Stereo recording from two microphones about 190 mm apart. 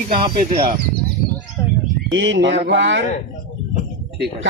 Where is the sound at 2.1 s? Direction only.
80° right.